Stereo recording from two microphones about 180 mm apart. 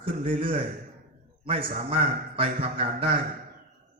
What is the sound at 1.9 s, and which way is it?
A man's voice, 30° right (ahead or behind).